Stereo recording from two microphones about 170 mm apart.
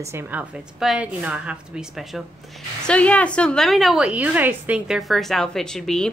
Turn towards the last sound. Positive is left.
turn(degrees=5)  # may be behind; listen again after turning